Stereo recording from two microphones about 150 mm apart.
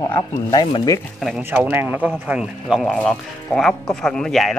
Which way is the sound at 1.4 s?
10° right (ahead or behind).